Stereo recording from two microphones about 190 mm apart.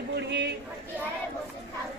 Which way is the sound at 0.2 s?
65° right (ahead or behind).